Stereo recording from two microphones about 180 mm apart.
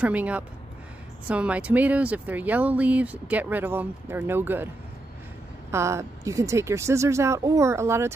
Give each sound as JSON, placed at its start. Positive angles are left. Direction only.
{"t": 0.0, "sound": "speech", "side_deg": -10}
{"t": 5.7, "sound": "speech", "side_deg": -15}